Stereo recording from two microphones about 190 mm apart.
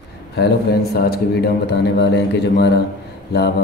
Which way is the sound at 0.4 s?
55° left (ahead or behind).